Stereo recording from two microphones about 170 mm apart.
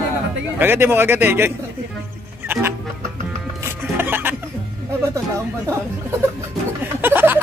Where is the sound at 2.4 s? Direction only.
15° right (ahead or behind).